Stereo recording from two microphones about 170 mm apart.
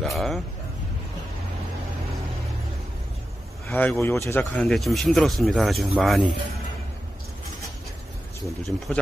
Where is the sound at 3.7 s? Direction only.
10° left (ahead or behind).